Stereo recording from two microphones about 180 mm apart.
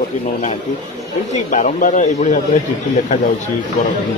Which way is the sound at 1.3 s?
45° left (ahead or behind).